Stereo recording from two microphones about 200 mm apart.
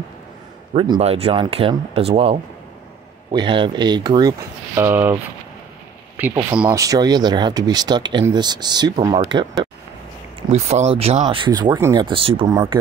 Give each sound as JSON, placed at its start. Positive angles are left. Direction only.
{"t": 0.7, "sound": "speech", "side_deg": -25}
{"t": 6.6, "sound": "speech", "side_deg": -15}
{"t": 10.5, "sound": "speech", "side_deg": -35}